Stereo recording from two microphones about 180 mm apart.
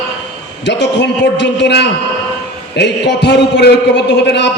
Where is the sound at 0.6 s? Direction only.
75° left (ahead or behind).